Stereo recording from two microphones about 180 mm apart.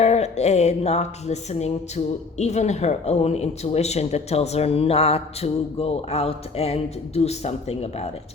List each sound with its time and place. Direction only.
0.0 s music: 40° left (ahead or behind)
2.4 s speech: 40° left (ahead or behind)